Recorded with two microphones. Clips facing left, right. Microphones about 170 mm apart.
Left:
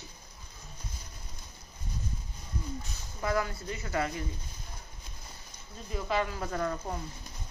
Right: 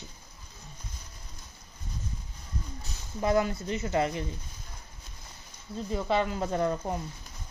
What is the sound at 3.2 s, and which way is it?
Speech, 25° right (ahead or behind).